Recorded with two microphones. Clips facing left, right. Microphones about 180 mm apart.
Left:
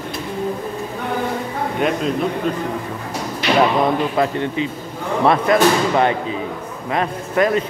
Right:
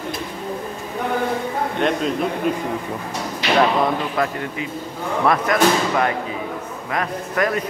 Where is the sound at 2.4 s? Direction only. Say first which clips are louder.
Even; 5° right (ahead or behind).